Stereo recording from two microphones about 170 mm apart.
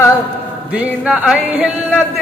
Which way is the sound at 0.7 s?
5° right (ahead or behind).